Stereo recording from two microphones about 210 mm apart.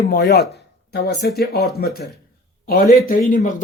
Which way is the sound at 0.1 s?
50° left (ahead or behind).